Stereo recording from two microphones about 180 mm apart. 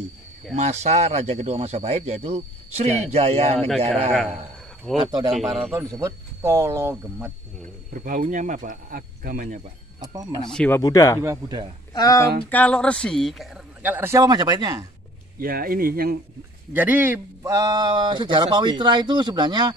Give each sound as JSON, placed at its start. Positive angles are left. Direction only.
{"t": 0.6, "sound": "speech", "side_deg": -40}
{"t": 3.5, "sound": "speech", "side_deg": 0}
{"t": 4.9, "sound": "speech", "side_deg": -25}
{"t": 5.3, "sound": "speech", "side_deg": 0}
{"t": 5.9, "sound": "speech", "side_deg": -15}
{"t": 7.9, "sound": "speech", "side_deg": -50}
{"t": 10.5, "sound": "speech", "side_deg": 5}
{"t": 10.8, "sound": "speech", "side_deg": 20}
{"t": 11.1, "sound": "speech", "side_deg": -20}
{"t": 11.9, "sound": "speech", "side_deg": 20}
{"t": 12.4, "sound": "speech", "side_deg": 10}
{"t": 13.8, "sound": "speech", "side_deg": -10}
{"t": 15.3, "sound": "speech", "side_deg": -55}
{"t": 16.7, "sound": "speech", "side_deg": -10}